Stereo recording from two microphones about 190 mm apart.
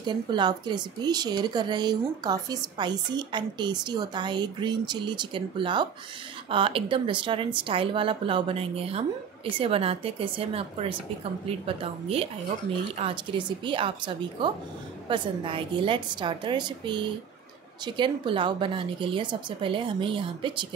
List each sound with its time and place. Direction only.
0.0 s a woman's voice: 25° right (ahead or behind)